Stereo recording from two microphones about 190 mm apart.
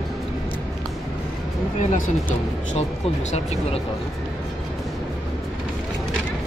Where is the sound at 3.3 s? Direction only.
35° left (ahead or behind).